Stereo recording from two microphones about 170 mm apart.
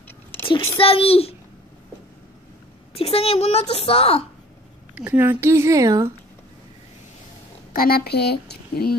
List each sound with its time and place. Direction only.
0.7 s a woman's voice: 35° left (ahead or behind)
2.9 s a woman's voice: 35° left (ahead or behind)
4.9 s speech: 10° right (ahead or behind)
7.7 s speech: 60° left (ahead or behind)